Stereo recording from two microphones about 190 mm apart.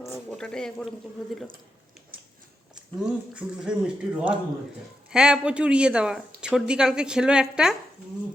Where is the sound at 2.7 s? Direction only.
5° right (ahead or behind).